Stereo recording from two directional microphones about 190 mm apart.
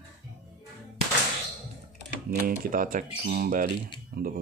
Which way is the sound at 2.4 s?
45° right (ahead or behind).